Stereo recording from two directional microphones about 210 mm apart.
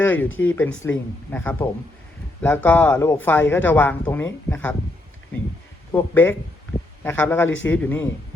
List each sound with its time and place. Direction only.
0.0 s speech: 10° left (ahead or behind)